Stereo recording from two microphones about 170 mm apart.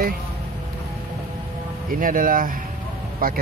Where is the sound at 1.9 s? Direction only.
55° right (ahead or behind).